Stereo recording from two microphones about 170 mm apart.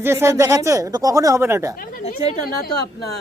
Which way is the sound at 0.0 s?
15° right (ahead or behind).